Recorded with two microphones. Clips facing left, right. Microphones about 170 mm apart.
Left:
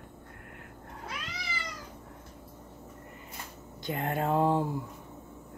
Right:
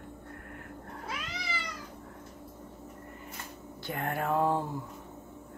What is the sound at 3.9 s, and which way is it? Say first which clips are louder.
Speech: left 2 dB; 20° left (ahead or behind).